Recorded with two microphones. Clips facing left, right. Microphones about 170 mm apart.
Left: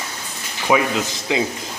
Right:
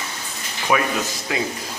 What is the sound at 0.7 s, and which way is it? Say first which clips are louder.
Speech: left 3 dB; 20° left (ahead or behind).